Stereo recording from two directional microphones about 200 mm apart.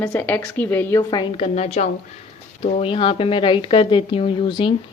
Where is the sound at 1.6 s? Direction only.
35° left (ahead or behind).